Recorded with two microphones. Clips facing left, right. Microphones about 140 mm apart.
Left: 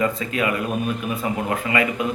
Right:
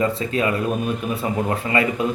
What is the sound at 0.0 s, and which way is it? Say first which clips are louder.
A man's voice: right 1 dB; 30° right (ahead or behind).